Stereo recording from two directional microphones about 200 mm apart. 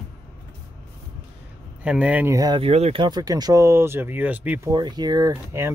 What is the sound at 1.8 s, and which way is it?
Speech, 5° right (ahead or behind).